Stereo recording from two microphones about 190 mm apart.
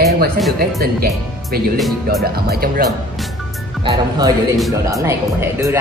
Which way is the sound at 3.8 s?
20° right (ahead or behind).